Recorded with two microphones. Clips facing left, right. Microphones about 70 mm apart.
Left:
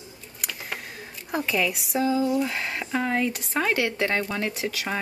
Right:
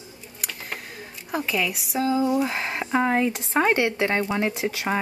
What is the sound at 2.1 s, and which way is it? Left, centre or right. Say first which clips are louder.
Speech: right 2 dB; centre.